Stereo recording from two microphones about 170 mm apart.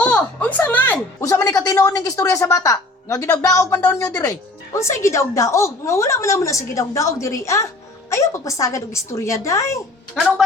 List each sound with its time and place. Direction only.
0.0 s speech: 10° left (ahead or behind)
10.2 s a woman's voice: centre (ahead or behind)